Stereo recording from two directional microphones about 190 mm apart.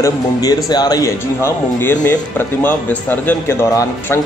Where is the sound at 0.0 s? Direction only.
20° left (ahead or behind).